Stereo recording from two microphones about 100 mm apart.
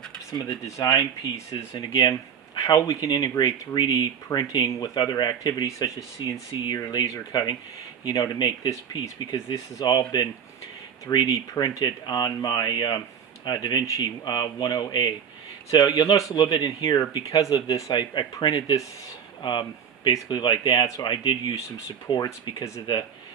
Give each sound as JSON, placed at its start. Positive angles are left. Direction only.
{"t": 0.3, "sound": "speech", "side_deg": 30}
{"t": 11.8, "sound": "speech", "side_deg": 50}
{"t": 19.4, "sound": "speech", "side_deg": 50}
{"t": 21.0, "sound": "speech", "side_deg": 45}
{"t": 21.5, "sound": "speech", "side_deg": 35}